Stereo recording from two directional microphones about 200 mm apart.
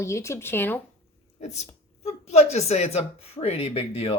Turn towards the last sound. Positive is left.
turn(degrees=30)  # may be behind; listen again after turning